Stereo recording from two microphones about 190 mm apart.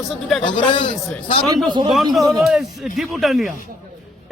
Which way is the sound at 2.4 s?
Centre (ahead or behind).